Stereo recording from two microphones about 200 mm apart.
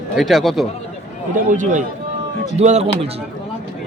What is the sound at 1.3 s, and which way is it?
A man's voice, 40° right (ahead or behind).